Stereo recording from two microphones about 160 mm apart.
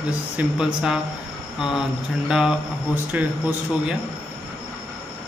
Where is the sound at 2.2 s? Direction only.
5° right (ahead or behind).